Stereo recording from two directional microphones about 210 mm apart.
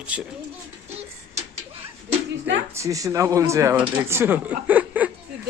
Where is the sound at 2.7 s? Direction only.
15° right (ahead or behind).